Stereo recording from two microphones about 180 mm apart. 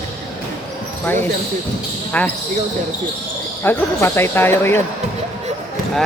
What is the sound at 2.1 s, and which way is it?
Speech, 10° left (ahead or behind).